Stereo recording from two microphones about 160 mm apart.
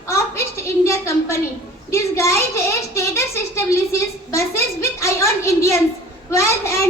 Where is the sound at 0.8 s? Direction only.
20° left (ahead or behind).